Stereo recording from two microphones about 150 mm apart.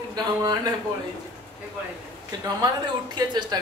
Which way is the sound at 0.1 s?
25° right (ahead or behind).